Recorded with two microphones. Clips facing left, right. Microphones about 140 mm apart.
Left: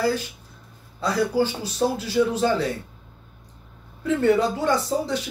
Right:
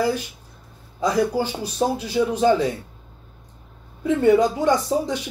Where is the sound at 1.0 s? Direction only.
15° right (ahead or behind).